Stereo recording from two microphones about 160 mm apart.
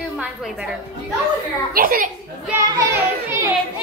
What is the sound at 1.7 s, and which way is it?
Speech, 65° right (ahead or behind).